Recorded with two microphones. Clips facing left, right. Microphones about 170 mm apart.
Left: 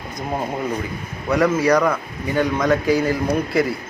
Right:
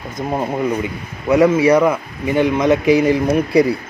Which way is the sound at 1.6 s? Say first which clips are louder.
Right 4 dB; 20° right (ahead or behind).